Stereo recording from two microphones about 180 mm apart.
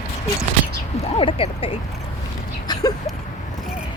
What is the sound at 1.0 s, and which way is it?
Speech, 30° left (ahead or behind).